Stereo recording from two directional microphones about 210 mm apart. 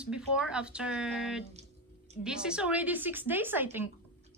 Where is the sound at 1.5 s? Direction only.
30° right (ahead or behind).